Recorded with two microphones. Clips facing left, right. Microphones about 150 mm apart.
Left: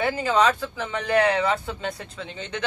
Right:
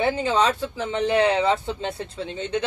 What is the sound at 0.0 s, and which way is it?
Speech, 25° right (ahead or behind).